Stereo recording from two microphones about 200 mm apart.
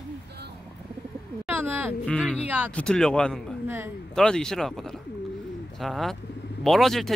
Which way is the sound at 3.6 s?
10° right (ahead or behind).